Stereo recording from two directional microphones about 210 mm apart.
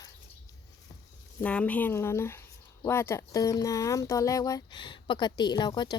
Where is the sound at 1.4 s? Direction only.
5° left (ahead or behind).